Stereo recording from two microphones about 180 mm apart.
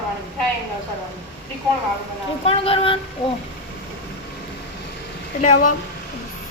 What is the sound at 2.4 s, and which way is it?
Speech, 30° left (ahead or behind).